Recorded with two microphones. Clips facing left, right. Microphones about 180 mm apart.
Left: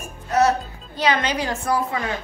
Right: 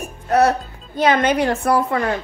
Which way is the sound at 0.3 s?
60° right (ahead or behind).